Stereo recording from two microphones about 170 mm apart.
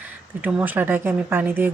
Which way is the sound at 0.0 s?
10° right (ahead or behind).